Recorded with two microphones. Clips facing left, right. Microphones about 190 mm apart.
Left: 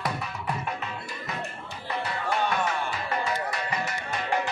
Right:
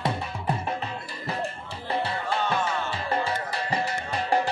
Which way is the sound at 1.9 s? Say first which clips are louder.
Right 2 dB; 30° right (ahead or behind).